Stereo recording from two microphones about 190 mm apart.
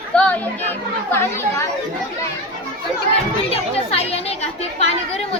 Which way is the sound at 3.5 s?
30° left (ahead or behind).